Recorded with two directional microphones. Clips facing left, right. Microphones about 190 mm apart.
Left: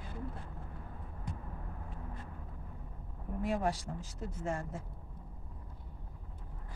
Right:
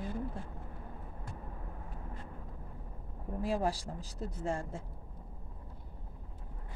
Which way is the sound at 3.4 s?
30° right (ahead or behind).